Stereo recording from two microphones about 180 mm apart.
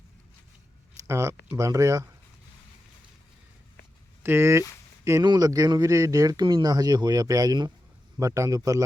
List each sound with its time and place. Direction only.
1.0 s speech: 15° right (ahead or behind)
4.2 s speech: 15° right (ahead or behind)